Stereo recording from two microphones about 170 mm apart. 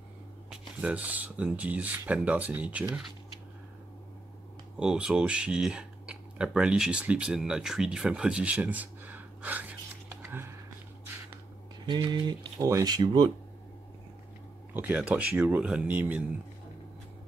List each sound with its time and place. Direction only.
0.5 s speech: 5° right (ahead or behind)
4.7 s speech: 5° right (ahead or behind)
10.2 s a sound: 15° right (ahead or behind)
11.8 s speech: 25° right (ahead or behind)
14.7 s speech: 10° right (ahead or behind)